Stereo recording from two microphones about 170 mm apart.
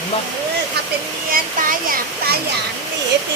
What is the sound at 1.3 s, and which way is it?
Speech, 55° right (ahead or behind).